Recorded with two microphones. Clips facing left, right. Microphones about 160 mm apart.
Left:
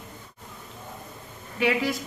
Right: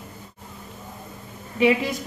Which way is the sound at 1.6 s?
20° right (ahead or behind).